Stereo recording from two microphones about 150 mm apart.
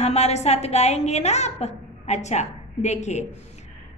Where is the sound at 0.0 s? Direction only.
45° left (ahead or behind).